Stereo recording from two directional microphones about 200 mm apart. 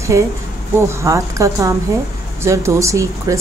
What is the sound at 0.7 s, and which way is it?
A woman's voice, 15° right (ahead or behind).